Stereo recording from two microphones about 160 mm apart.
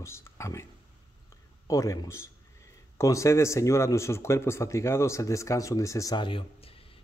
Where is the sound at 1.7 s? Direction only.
20° left (ahead or behind).